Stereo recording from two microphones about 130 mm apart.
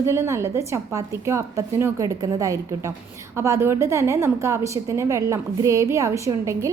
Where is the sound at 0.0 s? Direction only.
20° right (ahead or behind).